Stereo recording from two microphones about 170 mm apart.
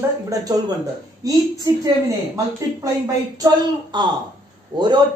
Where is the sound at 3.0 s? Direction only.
20° right (ahead or behind).